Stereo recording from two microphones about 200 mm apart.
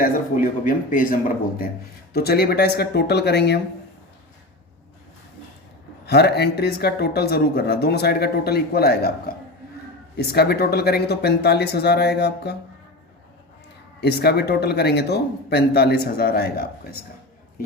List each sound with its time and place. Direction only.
0.0 s speech: 45° left (ahead or behind)
6.1 s speech: 55° left (ahead or behind)
14.0 s speech: 55° left (ahead or behind)